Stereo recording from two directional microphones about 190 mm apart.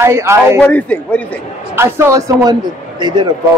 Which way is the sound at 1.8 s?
15° right (ahead or behind).